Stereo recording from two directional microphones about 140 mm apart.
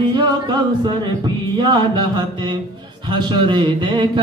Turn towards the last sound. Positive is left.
turn(degrees=-35)  # may be behind; listen again after turning